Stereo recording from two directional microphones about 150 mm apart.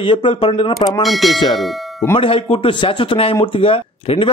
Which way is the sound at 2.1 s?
35° left (ahead or behind).